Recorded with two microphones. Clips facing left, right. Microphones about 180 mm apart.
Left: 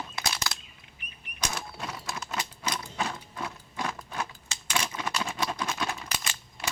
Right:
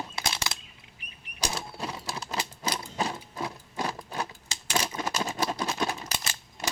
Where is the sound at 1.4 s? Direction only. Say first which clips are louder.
Right 2 dB; 30° right (ahead or behind).